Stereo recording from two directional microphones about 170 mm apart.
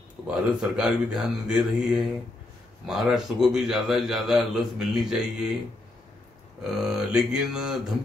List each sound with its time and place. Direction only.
0.3 s a man's voice: 5° right (ahead or behind)
6.6 s a man's voice: 5° right (ahead or behind)